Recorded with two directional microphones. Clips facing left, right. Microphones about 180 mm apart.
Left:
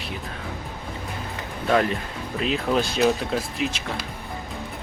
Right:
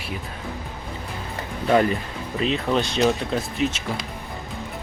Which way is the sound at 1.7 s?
Centre (ahead or behind).